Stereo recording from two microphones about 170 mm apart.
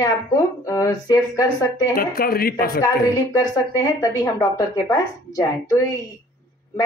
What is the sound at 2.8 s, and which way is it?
Speech, 20° left (ahead or behind).